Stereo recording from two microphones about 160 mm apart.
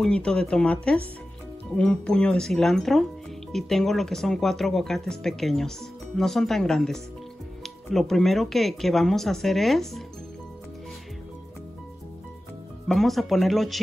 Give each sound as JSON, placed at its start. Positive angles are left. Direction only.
{"t": 0.0, "sound": "speech", "side_deg": 5}
{"t": 12.8, "sound": "speech", "side_deg": 0}